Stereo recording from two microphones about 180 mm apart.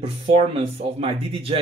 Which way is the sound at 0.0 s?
35° right (ahead or behind).